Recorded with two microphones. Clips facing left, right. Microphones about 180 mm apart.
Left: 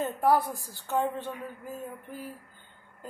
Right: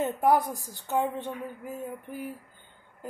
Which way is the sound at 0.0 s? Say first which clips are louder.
Right 1 dB; 15° right (ahead or behind).